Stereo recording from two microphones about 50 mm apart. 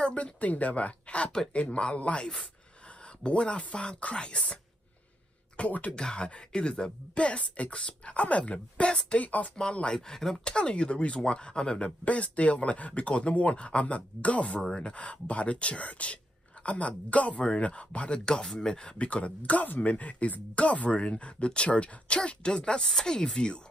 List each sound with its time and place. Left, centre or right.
0.0 s speech: left
3.3 s speech: left
5.6 s speech: left
14.6 s speech: centre